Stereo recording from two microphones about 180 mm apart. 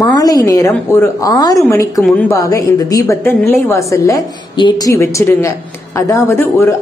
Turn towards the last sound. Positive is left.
turn(degrees=15)  # may be behind; listen again after turning